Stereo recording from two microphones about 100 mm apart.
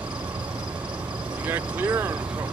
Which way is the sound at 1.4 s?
20° right (ahead or behind).